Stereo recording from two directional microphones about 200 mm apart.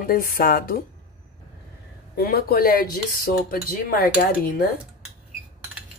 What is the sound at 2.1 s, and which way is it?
Speech, 50° left (ahead or behind).